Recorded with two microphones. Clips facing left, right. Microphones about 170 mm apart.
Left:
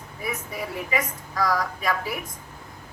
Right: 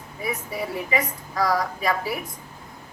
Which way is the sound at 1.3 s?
25° right (ahead or behind).